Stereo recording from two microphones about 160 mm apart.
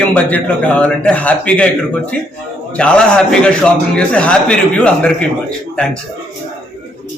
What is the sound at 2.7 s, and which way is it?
A man's voice, 5° left (ahead or behind).